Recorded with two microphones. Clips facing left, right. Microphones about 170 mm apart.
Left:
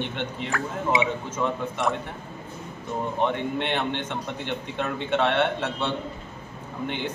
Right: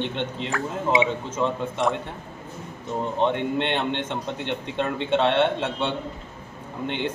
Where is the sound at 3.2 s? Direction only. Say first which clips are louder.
Right 3 dB; 20° right (ahead or behind).